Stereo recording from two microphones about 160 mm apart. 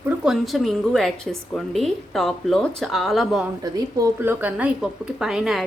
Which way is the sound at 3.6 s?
20° right (ahead or behind).